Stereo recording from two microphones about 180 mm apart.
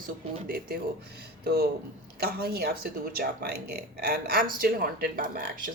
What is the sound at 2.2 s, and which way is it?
Speech, 60° right (ahead or behind).